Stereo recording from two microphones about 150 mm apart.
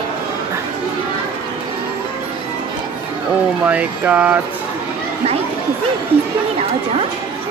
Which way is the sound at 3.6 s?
10° right (ahead or behind).